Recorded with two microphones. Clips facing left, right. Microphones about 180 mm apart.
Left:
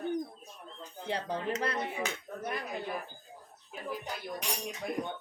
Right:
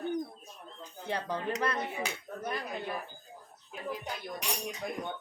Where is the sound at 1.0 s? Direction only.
30° left (ahead or behind).